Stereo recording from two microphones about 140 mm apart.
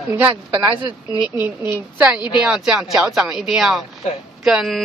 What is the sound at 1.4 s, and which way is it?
A woman's voice, 15° right (ahead or behind).